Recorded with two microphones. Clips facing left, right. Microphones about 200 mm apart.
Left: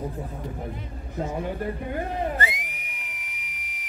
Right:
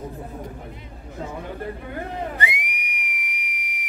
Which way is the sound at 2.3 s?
15° right (ahead or behind).